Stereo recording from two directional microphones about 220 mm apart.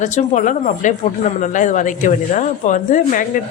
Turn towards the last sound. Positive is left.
turn(degrees=35)  # may be behind; listen again after turning